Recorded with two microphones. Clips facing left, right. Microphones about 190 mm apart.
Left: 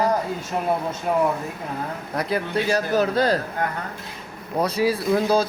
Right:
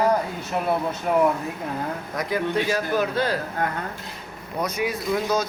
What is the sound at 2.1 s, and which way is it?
Speech, 35° left (ahead or behind).